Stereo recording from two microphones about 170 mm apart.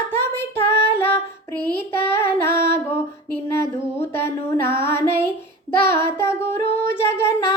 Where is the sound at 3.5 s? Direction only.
15° left (ahead or behind).